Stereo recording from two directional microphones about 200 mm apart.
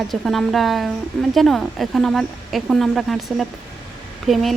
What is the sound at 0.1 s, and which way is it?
Speech, centre (ahead or behind).